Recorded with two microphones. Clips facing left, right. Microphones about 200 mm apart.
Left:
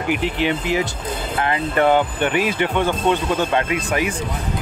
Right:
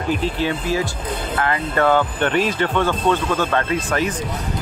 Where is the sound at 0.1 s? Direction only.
20° left (ahead or behind).